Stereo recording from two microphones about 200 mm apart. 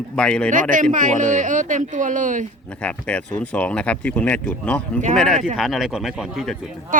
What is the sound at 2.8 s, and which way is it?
Speech, 5° left (ahead or behind).